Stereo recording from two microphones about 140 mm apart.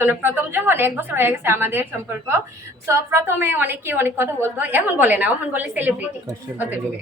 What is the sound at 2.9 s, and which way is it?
A woman's voice, 20° right (ahead or behind).